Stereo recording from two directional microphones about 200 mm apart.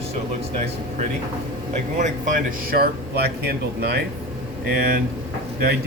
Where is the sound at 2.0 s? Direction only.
40° right (ahead or behind).